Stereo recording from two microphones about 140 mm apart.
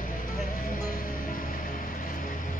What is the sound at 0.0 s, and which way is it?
Music, 75° left (ahead or behind).